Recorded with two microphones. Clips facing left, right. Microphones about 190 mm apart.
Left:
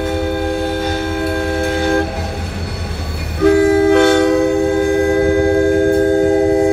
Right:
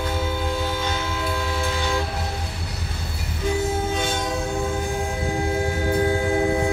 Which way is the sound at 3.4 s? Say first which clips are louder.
Left 14 dB; 70° left (ahead or behind).